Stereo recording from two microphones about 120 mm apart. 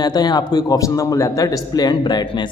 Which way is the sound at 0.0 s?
35° left (ahead or behind).